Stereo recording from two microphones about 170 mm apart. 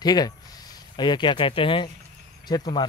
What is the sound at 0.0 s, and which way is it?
Speech, 25° left (ahead or behind).